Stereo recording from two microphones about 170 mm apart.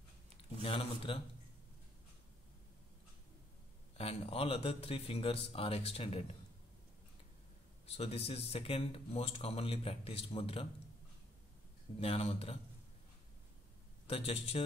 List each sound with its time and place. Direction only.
0.6 s speech: 30° left (ahead or behind)
4.0 s speech: 35° left (ahead or behind)
7.8 s speech: 35° left (ahead or behind)
12.0 s speech: 35° left (ahead or behind)
14.0 s speech: 35° left (ahead or behind)